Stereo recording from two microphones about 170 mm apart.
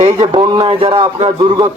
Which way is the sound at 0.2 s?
25° right (ahead or behind).